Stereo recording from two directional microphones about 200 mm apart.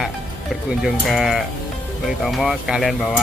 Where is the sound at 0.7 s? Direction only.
Centre (ahead or behind).